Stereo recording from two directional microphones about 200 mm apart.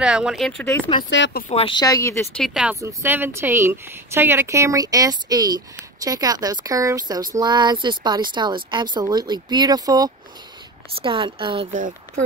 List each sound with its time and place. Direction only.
0.0 s speech: 5° right (ahead or behind)
0.7 s speech: 25° left (ahead or behind)
1.1 s speech: 65° left (ahead or behind)
1.5 s speech: 25° left (ahead or behind)
2.3 s speech: centre (ahead or behind); by 11.6 s 25° right (ahead or behind)